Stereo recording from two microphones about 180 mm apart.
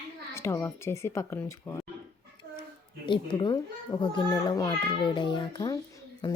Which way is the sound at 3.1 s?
25° left (ahead or behind).